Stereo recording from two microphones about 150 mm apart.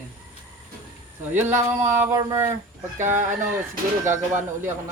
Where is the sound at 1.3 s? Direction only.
15° right (ahead or behind).